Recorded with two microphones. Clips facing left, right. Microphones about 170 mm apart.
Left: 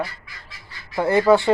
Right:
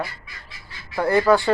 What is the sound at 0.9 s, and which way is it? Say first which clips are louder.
Speech: left 1 dB; 20° left (ahead or behind).